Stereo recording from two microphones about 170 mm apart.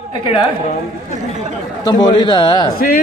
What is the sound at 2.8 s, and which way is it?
Speech, 55° left (ahead or behind).